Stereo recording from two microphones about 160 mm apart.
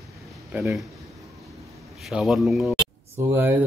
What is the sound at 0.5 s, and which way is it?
Speech, 10° right (ahead or behind).